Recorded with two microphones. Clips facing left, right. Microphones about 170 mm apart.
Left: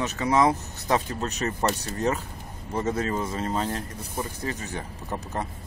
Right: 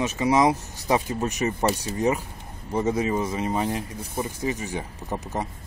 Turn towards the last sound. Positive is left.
turn(degrees=-15)  # may be behind; listen again after turning